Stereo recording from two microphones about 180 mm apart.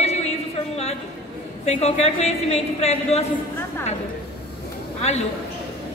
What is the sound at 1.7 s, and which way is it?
A woman's voice, 35° left (ahead or behind).